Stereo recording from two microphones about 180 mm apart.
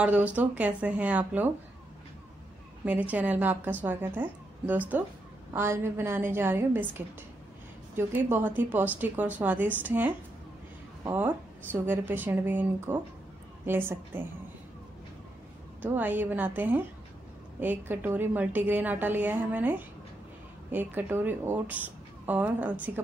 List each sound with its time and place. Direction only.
0.0 s speech: 10° right (ahead or behind)
2.8 s speech: 10° right (ahead or behind)
15.8 s speech: 10° right (ahead or behind)